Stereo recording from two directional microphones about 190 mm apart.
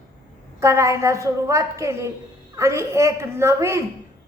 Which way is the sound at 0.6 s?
15° right (ahead or behind).